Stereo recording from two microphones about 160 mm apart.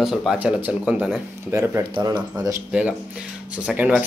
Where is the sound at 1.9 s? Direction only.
25° right (ahead or behind).